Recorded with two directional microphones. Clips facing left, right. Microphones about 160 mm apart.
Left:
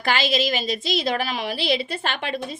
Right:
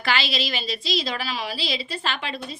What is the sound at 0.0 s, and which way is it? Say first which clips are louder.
A woman's voice: left 4 dB; 45° left (ahead or behind).